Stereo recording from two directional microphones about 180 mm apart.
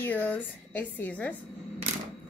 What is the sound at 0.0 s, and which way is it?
Speech, 10° left (ahead or behind).